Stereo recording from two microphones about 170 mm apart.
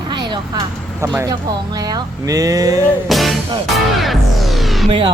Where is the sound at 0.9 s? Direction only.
15° right (ahead or behind).